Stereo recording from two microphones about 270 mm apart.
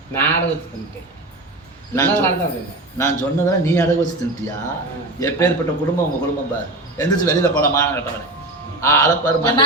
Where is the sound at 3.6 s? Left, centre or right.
Centre.